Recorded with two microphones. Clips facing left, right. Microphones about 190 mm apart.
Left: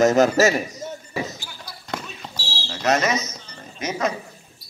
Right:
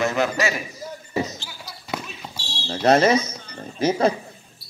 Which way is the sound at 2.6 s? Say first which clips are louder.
Right 5 dB; 30° right (ahead or behind).